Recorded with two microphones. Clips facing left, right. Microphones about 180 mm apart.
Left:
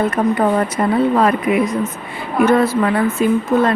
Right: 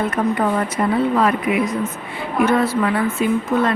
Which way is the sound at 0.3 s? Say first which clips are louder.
Left 3 dB; 35° left (ahead or behind).